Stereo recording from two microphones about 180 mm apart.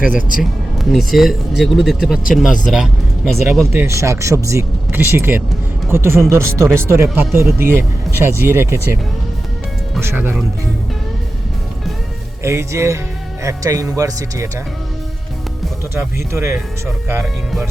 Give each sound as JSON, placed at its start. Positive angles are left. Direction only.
{"t": 0.1, "sound": "speech", "side_deg": 50}
{"t": 0.8, "sound": "speech", "side_deg": 0}
{"t": 3.7, "sound": "speech", "side_deg": -15}
{"t": 10.0, "sound": "speech", "side_deg": -15}
{"t": 12.4, "sound": "speech", "side_deg": -15}
{"t": 16.0, "sound": "speech", "side_deg": -15}